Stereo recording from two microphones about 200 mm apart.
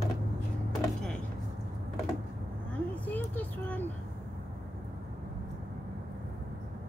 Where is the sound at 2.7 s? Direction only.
10° left (ahead or behind).